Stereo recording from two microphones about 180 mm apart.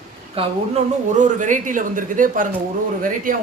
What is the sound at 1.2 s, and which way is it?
Speech, 45° right (ahead or behind).